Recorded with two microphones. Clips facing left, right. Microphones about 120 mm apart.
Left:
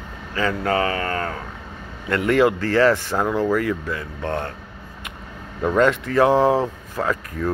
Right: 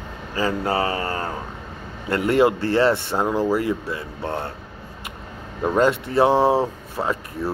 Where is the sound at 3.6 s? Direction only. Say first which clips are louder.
Even; 30° right (ahead or behind).